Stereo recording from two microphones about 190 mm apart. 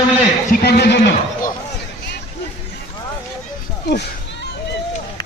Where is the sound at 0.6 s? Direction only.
60° left (ahead or behind).